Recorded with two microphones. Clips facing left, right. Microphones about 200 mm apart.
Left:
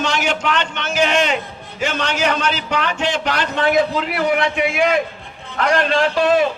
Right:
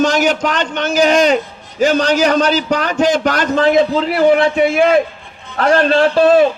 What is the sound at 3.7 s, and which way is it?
A man's voice, 30° right (ahead or behind).